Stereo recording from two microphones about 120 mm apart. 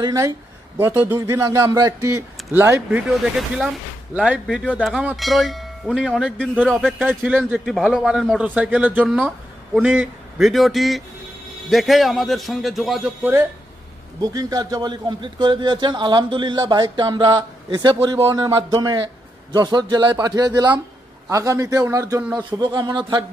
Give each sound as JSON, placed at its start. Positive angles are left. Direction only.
{"t": 0.0, "sound": "a man's voice", "side_deg": -25}
{"t": 2.9, "sound": "a man's voice", "side_deg": -5}
{"t": 7.6, "sound": "a man's voice", "side_deg": 0}
{"t": 13.2, "sound": "a man's voice", "side_deg": -20}
{"t": 14.2, "sound": "a man's voice", "side_deg": -30}
{"t": 21.3, "sound": "a man's voice", "side_deg": -25}
{"t": 22.4, "sound": "a man's voice", "side_deg": -40}